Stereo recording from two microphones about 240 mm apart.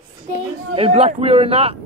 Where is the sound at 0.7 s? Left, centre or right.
Right.